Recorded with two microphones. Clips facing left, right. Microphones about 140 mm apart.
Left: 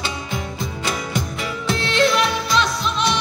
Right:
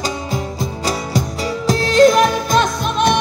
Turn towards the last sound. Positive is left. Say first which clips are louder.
# right 5 dB
turn(degrees=-50)  # may be behind; listen again after turning